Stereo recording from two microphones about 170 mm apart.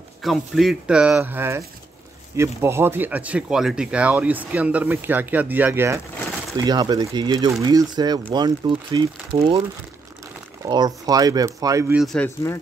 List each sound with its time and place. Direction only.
0.2 s speech: centre (ahead or behind)
6.5 s speech: 25° right (ahead or behind)
10.7 s speech: 25° right (ahead or behind)
11.9 s speech: centre (ahead or behind)